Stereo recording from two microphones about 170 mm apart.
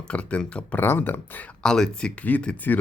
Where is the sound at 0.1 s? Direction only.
5° left (ahead or behind).